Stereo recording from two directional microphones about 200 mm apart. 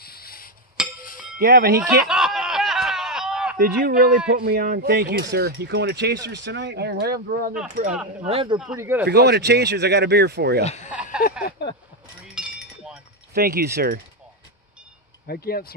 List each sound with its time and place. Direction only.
0.0 s a sound: 50° left (ahead or behind)
0.8 s music: 5° right (ahead or behind)
1.4 s speech: 50° right (ahead or behind)
2.0 s a sound: centre (ahead or behind)
3.5 s speech: 45° right (ahead or behind)
8.2 s speech: 30° right (ahead or behind)
8.7 s speech: 10° right (ahead or behind)
9.0 s speech: 55° right (ahead or behind)
10.6 s speech: 35° left (ahead or behind)
10.9 s a sound: 5° right (ahead or behind)
11.6 s speech: 55° left (ahead or behind)
12.4 s chink: 5° right (ahead or behind)
13.3 s speech: 50° right (ahead or behind)
15.2 s speech: 50° left (ahead or behind)